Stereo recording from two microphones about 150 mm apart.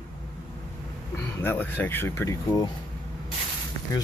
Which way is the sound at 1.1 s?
15° left (ahead or behind).